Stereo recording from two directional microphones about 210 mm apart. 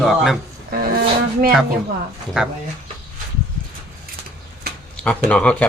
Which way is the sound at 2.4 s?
5° right (ahead or behind).